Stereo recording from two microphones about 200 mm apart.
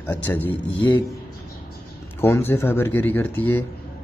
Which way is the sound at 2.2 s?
10° left (ahead or behind).